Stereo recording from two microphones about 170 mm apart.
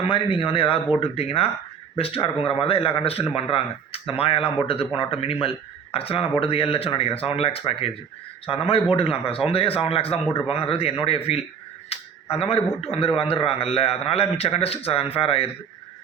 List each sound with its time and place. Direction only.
0.1 s a man's voice: 30° left (ahead or behind)
11.9 s a sound: 35° left (ahead or behind)
12.8 s a man's voice: 35° left (ahead or behind)